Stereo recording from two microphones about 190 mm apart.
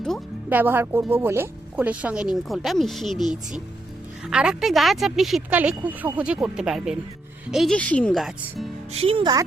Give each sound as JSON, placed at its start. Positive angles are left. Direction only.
{"t": 0.5, "sound": "speech", "side_deg": -10}
{"t": 8.9, "sound": "speech", "side_deg": -30}